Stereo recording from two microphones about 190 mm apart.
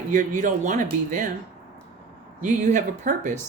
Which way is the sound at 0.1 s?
40° right (ahead or behind).